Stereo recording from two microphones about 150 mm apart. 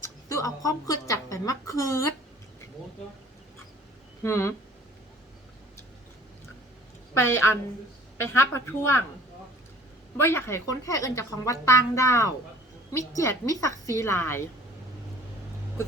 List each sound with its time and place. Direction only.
0.3 s a sound: 20° left (ahead or behind)
4.2 s speech: 20° left (ahead or behind)
7.1 s a woman's voice: 15° left (ahead or behind)
10.2 s speech: 15° left (ahead or behind)